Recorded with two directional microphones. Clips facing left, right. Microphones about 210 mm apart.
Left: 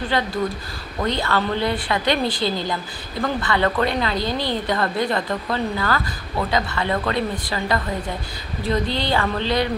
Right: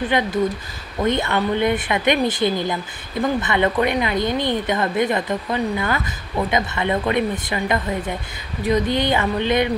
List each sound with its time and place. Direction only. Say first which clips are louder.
0.1 s speech: right 2 dB; 20° right (ahead or behind)